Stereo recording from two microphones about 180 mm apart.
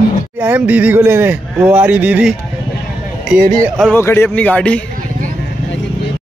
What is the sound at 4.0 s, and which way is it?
Speech, 15° left (ahead or behind).